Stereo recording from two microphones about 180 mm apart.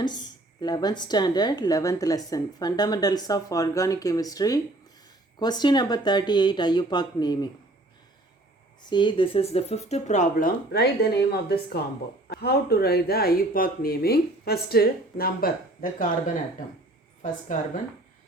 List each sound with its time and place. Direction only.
0.6 s a woman's voice: 20° left (ahead or behind)
8.8 s speech: 25° left (ahead or behind); by 16.4 s 45° left (ahead or behind)